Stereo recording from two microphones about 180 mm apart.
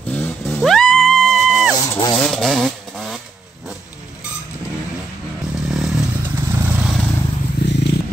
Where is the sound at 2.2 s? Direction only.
Centre (ahead or behind).